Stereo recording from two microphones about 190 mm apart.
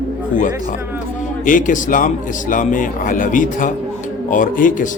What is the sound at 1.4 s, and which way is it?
Speech, 45° left (ahead or behind).